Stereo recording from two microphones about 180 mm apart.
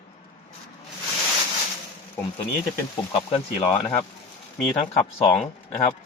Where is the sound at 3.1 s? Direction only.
35° left (ahead or behind).